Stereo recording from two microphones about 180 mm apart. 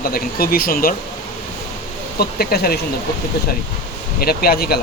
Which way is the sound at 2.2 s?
60° left (ahead or behind).